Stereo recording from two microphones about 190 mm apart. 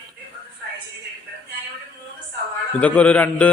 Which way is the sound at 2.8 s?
5° left (ahead or behind).